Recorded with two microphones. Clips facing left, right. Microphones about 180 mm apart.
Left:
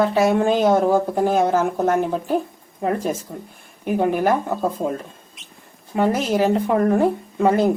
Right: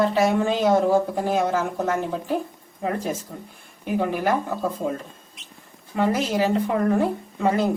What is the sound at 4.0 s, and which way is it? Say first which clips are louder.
Speech: left 6 dB; 50° left (ahead or behind).